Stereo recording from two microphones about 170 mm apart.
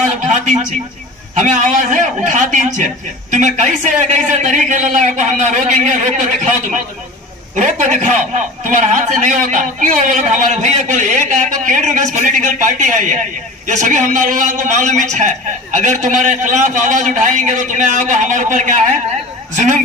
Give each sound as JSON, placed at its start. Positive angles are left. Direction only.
{"t": 1.3, "sound": "a man's voice", "side_deg": -45}